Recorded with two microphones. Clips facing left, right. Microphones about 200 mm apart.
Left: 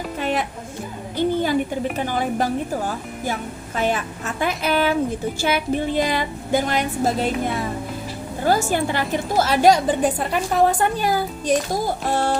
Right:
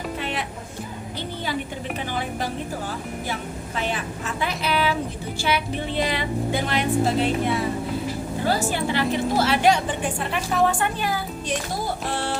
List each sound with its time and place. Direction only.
0.2 s music: 45° left (ahead or behind)
1.1 s a sound: 50° left (ahead or behind)
2.0 s speech: 45° left (ahead or behind)
3.8 s music: 45° left (ahead or behind)
8.4 s a woman's voice: 45° left (ahead or behind)
12.0 s a sound: 45° left (ahead or behind)